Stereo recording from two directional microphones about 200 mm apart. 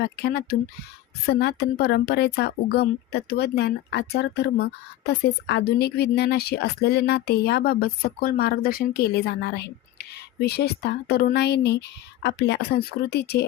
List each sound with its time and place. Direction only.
0.0 s a woman's voice: 55° left (ahead or behind)